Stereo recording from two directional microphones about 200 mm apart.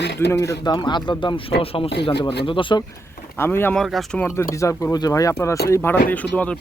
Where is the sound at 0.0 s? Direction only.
60° left (ahead or behind).